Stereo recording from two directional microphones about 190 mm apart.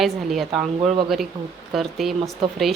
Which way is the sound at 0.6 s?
35° right (ahead or behind).